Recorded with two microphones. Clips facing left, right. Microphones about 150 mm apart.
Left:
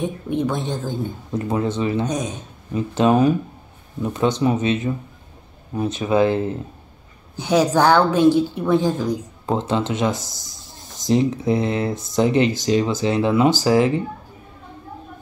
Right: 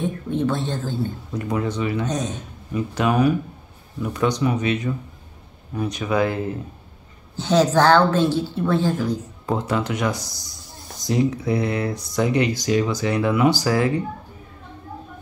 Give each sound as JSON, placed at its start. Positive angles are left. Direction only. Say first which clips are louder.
{"t": 0.0, "sound": "a woman's voice", "louder": "even", "side_deg": 15}
{"t": 1.5, "sound": "speech", "louder": "left 2 dB", "side_deg": 25}
{"t": 2.0, "sound": "a woman's voice", "louder": "left 1 dB", "side_deg": 10}
{"t": 2.7, "sound": "speech", "louder": "left 4 dB", "side_deg": 25}
{"t": 7.3, "sound": "a woman's voice", "louder": "even", "side_deg": 10}